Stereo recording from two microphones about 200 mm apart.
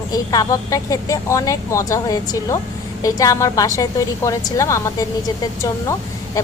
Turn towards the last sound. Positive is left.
turn(degrees=15)  # may be behind; listen again after turning